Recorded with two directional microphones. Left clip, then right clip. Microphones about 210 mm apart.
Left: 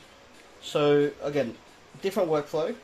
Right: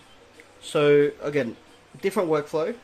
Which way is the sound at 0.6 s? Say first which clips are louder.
Right 4 dB; 35° right (ahead or behind).